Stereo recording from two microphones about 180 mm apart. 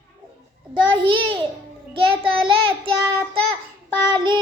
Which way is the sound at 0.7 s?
25° right (ahead or behind).